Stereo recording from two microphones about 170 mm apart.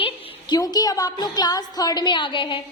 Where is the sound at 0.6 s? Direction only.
20° left (ahead or behind).